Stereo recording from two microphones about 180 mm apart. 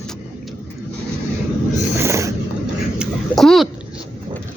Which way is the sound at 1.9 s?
15° right (ahead or behind).